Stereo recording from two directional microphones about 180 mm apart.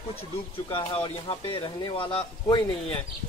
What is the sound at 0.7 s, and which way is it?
Speech, 30° left (ahead or behind).